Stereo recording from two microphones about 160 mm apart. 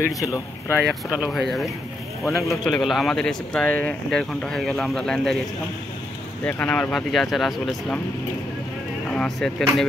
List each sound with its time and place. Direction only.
0.0 s speech: 20° left (ahead or behind)
1.1 s speech: centre (ahead or behind)
6.4 s speech: 10° left (ahead or behind)
9.1 s speech: 5° left (ahead or behind)